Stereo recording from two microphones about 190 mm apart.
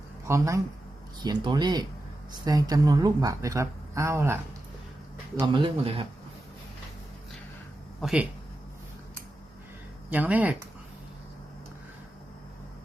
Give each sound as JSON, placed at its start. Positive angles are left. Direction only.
{"t": 0.3, "sound": "speech", "side_deg": -15}
{"t": 5.5, "sound": "speech", "side_deg": -30}
{"t": 8.0, "sound": "speech", "side_deg": -5}
{"t": 10.1, "sound": "speech", "side_deg": -10}